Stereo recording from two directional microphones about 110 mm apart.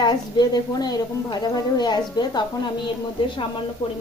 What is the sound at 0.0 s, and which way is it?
A woman's voice, 40° left (ahead or behind).